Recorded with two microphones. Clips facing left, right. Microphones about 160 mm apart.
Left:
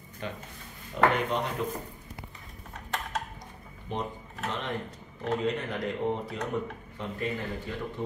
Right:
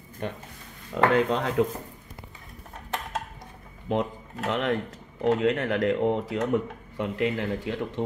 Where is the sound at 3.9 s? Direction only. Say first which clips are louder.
Right 7 dB; 90° right.